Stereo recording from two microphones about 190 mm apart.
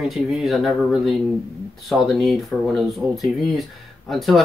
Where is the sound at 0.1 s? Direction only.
Centre (ahead or behind).